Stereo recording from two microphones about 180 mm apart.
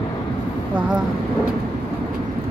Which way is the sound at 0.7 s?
5° right (ahead or behind).